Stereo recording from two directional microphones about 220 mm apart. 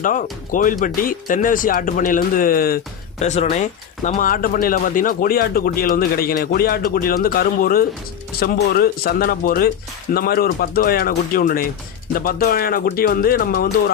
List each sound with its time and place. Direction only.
0.0 s speech: 35° left (ahead or behind)